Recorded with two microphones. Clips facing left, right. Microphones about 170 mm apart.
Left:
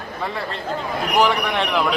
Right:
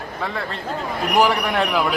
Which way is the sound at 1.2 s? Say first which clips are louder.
Right 1 dB; 5° right (ahead or behind).